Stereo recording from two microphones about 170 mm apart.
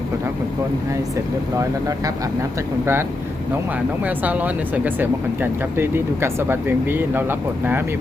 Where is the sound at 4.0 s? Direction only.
10° right (ahead or behind).